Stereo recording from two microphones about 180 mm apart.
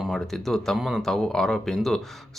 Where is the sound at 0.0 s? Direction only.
Centre (ahead or behind).